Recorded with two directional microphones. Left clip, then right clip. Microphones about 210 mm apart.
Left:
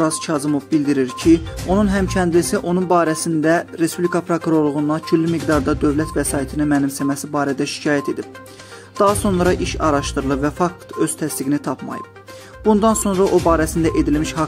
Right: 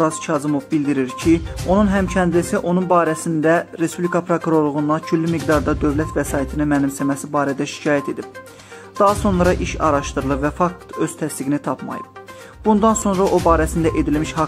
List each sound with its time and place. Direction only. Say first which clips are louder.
0.0 s speech: even; 20° left (ahead or behind)